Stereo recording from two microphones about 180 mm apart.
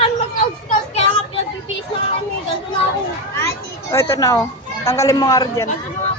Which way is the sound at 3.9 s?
15° left (ahead or behind).